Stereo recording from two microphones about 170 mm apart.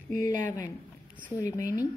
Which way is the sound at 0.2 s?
50° right (ahead or behind).